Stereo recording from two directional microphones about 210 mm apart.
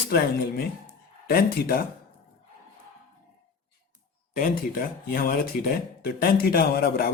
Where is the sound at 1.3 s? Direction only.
45° left (ahead or behind).